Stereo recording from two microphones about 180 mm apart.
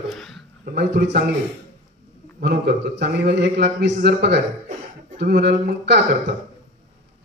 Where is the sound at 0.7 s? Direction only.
65° right (ahead or behind).